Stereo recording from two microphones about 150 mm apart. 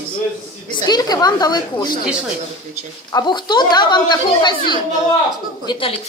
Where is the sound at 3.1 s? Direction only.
30° left (ahead or behind).